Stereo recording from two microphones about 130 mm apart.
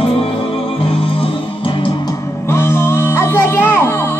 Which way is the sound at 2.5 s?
20° left (ahead or behind).